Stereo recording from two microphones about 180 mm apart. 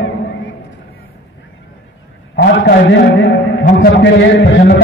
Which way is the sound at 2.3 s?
70° left (ahead or behind).